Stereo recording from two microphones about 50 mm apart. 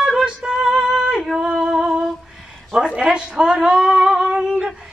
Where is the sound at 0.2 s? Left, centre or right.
Centre.